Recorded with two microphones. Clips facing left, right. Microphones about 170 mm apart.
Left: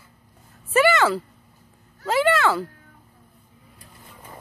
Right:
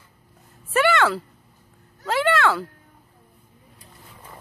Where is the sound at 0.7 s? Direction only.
Centre (ahead or behind).